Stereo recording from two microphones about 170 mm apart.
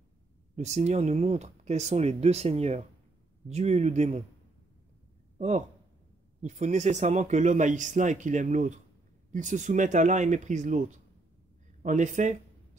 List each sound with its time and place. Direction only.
0.6 s speech: 40° right (ahead or behind)
6.4 s speech: 45° right (ahead or behind)